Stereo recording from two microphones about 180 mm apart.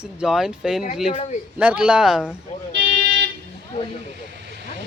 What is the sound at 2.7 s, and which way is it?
Vehicle, 75° right (ahead or behind).